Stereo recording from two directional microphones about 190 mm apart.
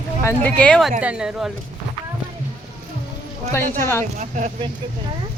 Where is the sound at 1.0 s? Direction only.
5° right (ahead or behind).